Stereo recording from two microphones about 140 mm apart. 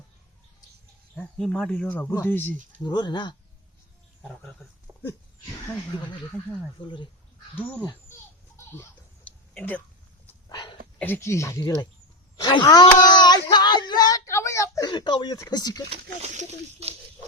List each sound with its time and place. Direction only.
1.4 s speech: centre (ahead or behind)
2.8 s speech: 30° left (ahead or behind)
4.9 s dog: 25° right (ahead or behind)
6.8 s speech: 35° left (ahead or behind)
7.5 s speech: 10° left (ahead or behind)
8.5 s a sound: 15° left (ahead or behind)
10.5 s a sound: 35° left (ahead or behind)
11.0 s speech: 15° left (ahead or behind)
12.4 s a sound: 30° left (ahead or behind)
15.9 s speech: 55° right (ahead or behind)